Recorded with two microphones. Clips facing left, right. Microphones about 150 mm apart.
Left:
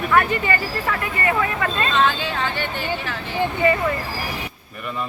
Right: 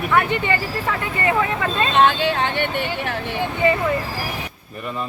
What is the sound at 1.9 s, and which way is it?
Speech, 60° right (ahead or behind).